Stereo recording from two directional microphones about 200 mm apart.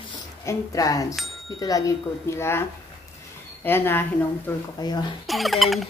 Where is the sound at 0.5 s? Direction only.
15° left (ahead or behind).